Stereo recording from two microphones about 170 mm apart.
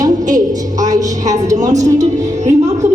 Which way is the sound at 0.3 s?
20° right (ahead or behind).